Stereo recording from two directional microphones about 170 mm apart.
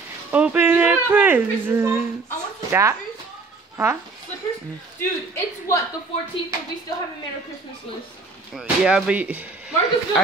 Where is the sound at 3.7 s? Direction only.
15° right (ahead or behind).